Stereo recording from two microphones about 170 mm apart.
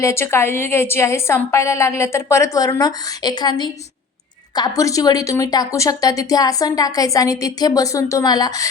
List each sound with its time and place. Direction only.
0.0 s a woman's voice: 15° left (ahead or behind)